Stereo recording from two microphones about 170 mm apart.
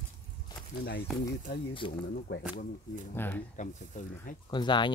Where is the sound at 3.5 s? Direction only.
45° left (ahead or behind).